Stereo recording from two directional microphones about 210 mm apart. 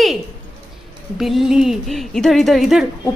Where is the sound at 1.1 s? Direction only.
Centre (ahead or behind).